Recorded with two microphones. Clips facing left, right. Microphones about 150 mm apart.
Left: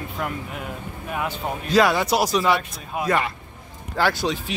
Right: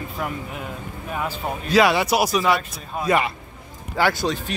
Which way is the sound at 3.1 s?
15° right (ahead or behind).